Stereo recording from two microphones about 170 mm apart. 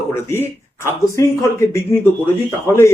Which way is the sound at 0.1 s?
15° left (ahead or behind).